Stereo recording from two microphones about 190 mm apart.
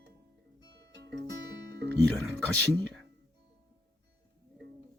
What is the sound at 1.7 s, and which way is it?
Music, 65° right (ahead or behind).